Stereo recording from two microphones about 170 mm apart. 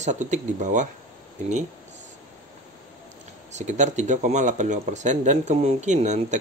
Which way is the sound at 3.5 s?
45° right (ahead or behind).